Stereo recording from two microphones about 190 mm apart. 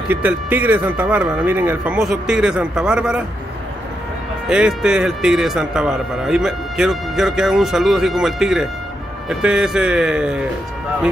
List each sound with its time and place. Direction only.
0.1 s a man's voice: 10° right (ahead or behind)
4.5 s a man's voice: 5° right (ahead or behind)